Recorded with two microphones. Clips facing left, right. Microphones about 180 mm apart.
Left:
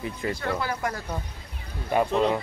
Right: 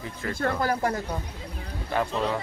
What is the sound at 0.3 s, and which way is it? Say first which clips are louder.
Speech: right 4 dB; 45° right (ahead or behind).